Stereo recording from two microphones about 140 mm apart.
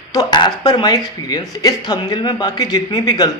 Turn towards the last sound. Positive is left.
turn(degrees=30)  # may be behind; listen again after turning